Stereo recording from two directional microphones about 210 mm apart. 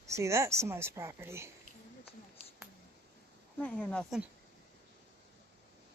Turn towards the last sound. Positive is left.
turn(degrees=5)  # may be behind; listen again after turning